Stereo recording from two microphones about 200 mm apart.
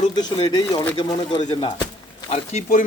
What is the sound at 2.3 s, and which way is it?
Speech, 35° left (ahead or behind).